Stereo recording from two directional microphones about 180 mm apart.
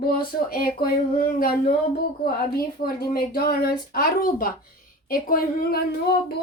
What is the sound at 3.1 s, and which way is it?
Speech, 55° left (ahead or behind).